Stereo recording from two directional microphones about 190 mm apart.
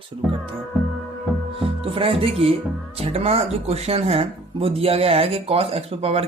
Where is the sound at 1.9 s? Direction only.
30° right (ahead or behind).